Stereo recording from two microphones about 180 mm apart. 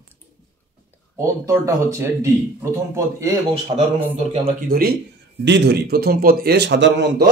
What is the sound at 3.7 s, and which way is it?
Speech, 30° right (ahead or behind).